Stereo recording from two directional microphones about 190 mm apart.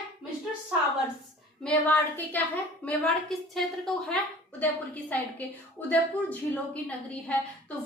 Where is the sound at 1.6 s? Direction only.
10° left (ahead or behind).